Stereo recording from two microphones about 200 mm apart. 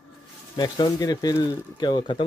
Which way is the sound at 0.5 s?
20° left (ahead or behind).